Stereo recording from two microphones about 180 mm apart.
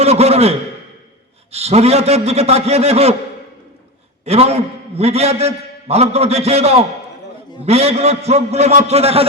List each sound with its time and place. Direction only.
0.0 s a man's voice: 35° right (ahead or behind)
1.5 s a man's voice: 35° right (ahead or behind)
4.3 s a man's voice: 35° right (ahead or behind)